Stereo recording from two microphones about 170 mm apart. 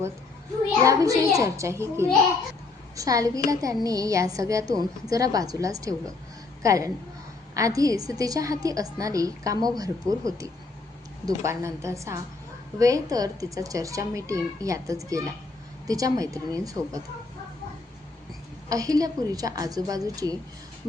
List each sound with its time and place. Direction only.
0.9 s a child's voice: 20° right (ahead or behind)
18.7 s a woman's voice: 20° right (ahead or behind)